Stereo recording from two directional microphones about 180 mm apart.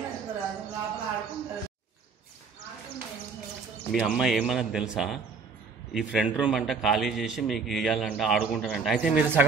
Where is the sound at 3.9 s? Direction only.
Centre (ahead or behind).